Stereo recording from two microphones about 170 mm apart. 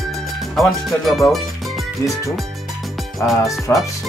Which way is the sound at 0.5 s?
Centre (ahead or behind).